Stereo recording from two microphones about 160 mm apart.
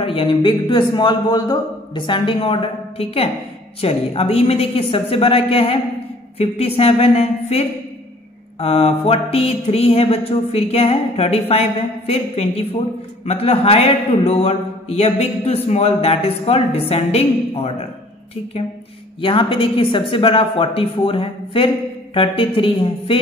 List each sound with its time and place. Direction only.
0.0 s a man's voice: 35° left (ahead or behind)
19.2 s a man's voice: 35° left (ahead or behind)